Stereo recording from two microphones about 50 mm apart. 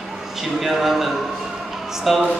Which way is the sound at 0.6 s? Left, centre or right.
Centre.